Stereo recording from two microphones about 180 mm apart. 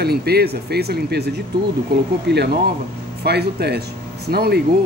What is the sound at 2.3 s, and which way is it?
Speech, 70° right (ahead or behind).